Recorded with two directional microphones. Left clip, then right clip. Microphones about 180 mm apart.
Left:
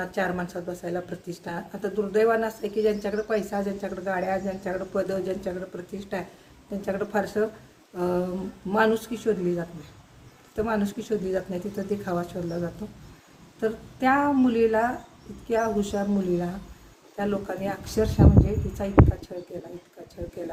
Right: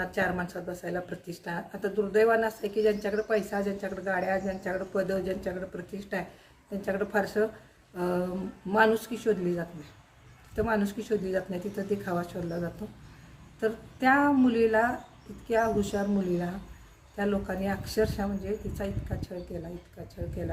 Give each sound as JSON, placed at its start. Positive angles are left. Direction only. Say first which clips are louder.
{"t": 0.0, "sound": "speech", "louder": "left 1 dB", "side_deg": -10}